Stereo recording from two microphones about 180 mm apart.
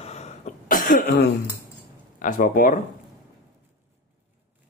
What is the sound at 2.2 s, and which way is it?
Speech, 45° left (ahead or behind).